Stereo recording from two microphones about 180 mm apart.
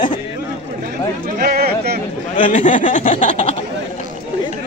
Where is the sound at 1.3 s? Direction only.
60° right (ahead or behind).